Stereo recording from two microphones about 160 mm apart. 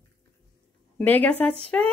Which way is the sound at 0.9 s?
10° left (ahead or behind).